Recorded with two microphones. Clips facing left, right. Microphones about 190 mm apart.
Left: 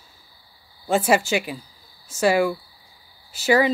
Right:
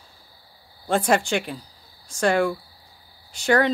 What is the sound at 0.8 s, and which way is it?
Speech, 5° left (ahead or behind).